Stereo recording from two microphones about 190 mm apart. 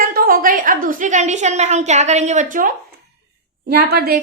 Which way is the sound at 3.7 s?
55° right (ahead or behind).